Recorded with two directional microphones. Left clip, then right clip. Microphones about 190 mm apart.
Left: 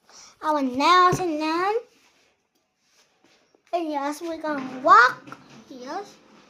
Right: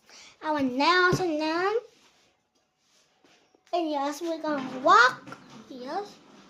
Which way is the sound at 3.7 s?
5° left (ahead or behind).